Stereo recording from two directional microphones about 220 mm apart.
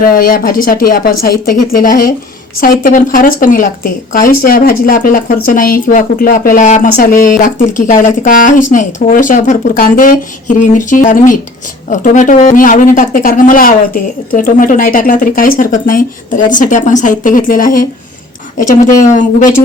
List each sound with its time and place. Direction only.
0.0 s speech: 40° left (ahead or behind)